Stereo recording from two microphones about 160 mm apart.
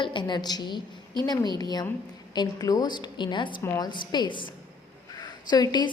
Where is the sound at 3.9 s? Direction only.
30° left (ahead or behind).